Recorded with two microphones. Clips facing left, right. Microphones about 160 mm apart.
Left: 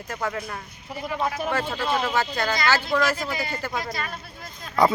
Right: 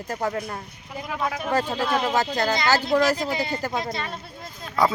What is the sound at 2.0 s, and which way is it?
Speech, 40° right (ahead or behind).